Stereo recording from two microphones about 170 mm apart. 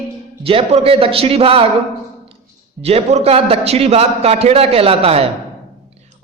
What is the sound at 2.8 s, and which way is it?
A man's voice, 35° right (ahead or behind).